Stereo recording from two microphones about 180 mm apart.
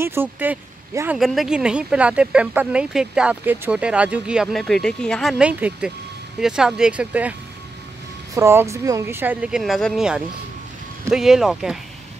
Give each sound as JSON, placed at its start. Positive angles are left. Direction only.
{"t": 0.0, "sound": "speech", "side_deg": -10}
{"t": 5.4, "sound": "speech", "side_deg": -5}
{"t": 8.4, "sound": "speech", "side_deg": -15}